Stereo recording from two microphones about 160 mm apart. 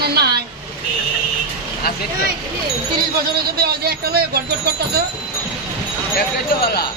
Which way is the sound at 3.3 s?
80° right.